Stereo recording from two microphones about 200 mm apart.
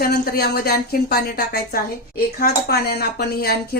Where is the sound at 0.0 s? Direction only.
50° left (ahead or behind).